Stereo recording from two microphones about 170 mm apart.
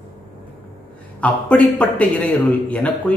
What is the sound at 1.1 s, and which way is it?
Speech, 5° left (ahead or behind).